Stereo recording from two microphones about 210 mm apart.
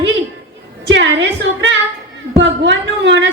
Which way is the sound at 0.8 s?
60° right (ahead or behind).